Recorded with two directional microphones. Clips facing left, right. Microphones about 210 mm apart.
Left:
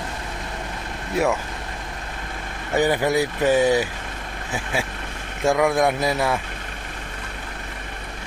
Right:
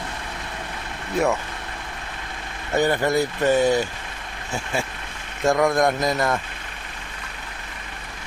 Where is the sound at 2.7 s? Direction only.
10° left (ahead or behind).